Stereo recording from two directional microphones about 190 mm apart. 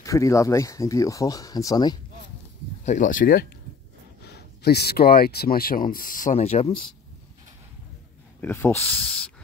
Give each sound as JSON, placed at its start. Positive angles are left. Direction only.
{"t": 0.0, "sound": "speech", "side_deg": 15}
{"t": 2.8, "sound": "speech", "side_deg": 40}
{"t": 4.2, "sound": "speech", "side_deg": 60}
{"t": 8.4, "sound": "speech", "side_deg": 10}